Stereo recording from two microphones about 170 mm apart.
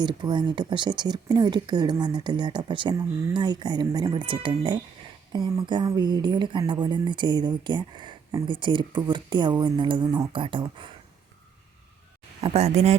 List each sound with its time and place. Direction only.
0.0 s speech: 25° right (ahead or behind)
12.4 s speech: 40° right (ahead or behind)